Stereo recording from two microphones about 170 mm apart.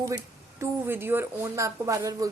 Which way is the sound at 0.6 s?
15° right (ahead or behind).